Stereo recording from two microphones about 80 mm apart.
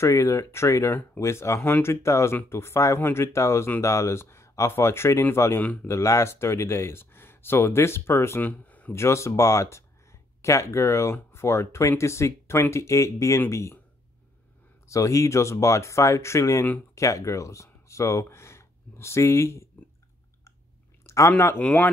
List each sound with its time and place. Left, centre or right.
0.0 s speech: left; by 8.9 s centre
8.9 s speech: left
14.9 s speech: left
21.0 s a sound: left
21.3 s speech: left
21.5 s speech: centre